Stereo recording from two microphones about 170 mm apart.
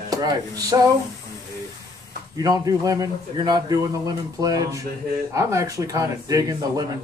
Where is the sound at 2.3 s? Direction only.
20° right (ahead or behind).